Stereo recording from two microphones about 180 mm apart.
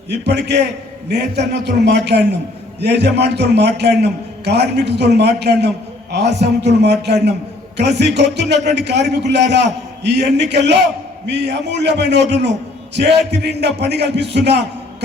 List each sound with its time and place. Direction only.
0.1 s a man's voice: 70° right (ahead or behind)